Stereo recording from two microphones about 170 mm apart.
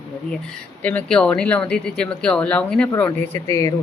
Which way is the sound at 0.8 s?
5° left (ahead or behind).